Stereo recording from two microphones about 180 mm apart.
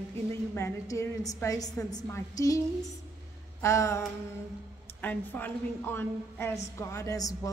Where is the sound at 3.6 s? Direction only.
15° left (ahead or behind).